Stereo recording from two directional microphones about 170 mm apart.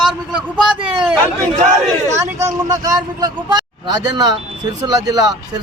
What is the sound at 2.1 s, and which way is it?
Speech, 20° right (ahead or behind).